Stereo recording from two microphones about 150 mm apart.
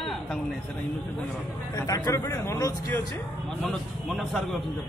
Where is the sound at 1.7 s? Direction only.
20° left (ahead or behind).